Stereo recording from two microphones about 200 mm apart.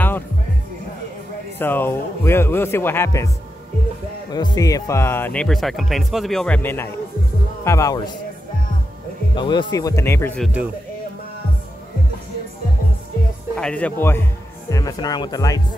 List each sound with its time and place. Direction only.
1.6 s speech: 10° left (ahead or behind)
4.3 s speech: 20° left (ahead or behind)
9.3 s speech: 25° left (ahead or behind); by 10.5 s 10° left (ahead or behind)
13.6 s speech: 5° left (ahead or behind)